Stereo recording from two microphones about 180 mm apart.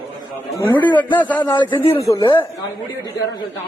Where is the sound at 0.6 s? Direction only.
25° left (ahead or behind).